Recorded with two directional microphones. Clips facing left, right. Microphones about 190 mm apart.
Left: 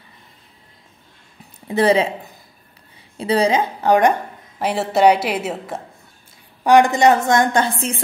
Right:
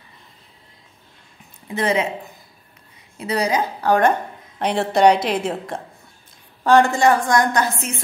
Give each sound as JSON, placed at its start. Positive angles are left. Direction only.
{"t": 1.4, "sound": "a sound", "side_deg": 35}
{"t": 3.2, "sound": "a woman's voice", "side_deg": 30}
{"t": 4.6, "sound": "a woman's voice", "side_deg": 5}